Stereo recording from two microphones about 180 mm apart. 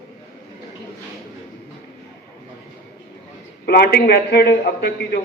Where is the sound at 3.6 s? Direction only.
60° left (ahead or behind).